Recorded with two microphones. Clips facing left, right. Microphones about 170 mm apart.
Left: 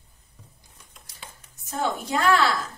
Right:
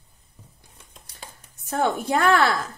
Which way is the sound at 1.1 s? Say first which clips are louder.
Right 2 dB; 55° right (ahead or behind).